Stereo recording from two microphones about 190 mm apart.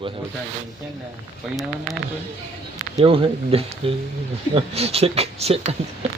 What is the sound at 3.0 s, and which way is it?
Speech, 30° right (ahead or behind).